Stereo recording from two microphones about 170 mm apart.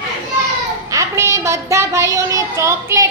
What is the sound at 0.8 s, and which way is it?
A woman's voice, 20° right (ahead or behind).